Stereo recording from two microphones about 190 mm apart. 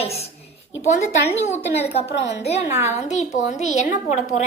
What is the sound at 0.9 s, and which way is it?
Speech, 40° left (ahead or behind).